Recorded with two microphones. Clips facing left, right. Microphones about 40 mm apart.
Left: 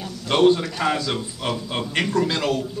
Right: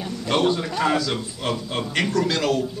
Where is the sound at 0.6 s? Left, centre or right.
Centre.